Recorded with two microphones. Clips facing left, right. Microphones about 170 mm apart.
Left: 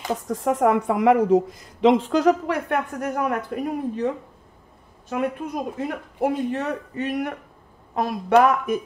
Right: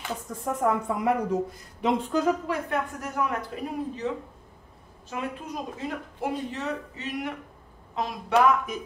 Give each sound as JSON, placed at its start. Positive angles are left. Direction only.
{"t": 0.3, "sound": "a woman's voice", "side_deg": 90}
{"t": 5.1, "sound": "speech", "side_deg": 55}